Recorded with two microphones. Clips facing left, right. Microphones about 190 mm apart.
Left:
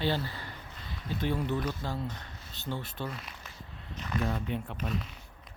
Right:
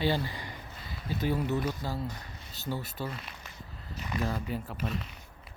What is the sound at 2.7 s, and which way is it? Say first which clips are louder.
Speech: right 1 dB; 10° right (ahead or behind).